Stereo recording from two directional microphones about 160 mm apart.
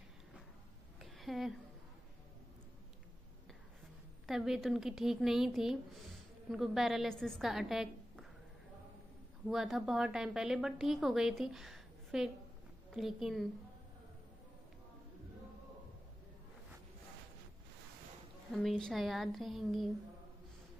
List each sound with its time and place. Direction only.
1.0 s a sound: centre (ahead or behind)
4.3 s speech: centre (ahead or behind)
9.5 s speech: centre (ahead or behind)
18.5 s speech: centre (ahead or behind)